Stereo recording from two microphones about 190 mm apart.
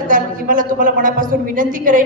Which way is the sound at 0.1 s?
45° right (ahead or behind).